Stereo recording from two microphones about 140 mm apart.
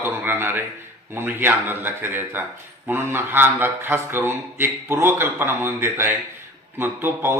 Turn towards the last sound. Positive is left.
turn(degrees=-15)  # may be behind; listen again after turning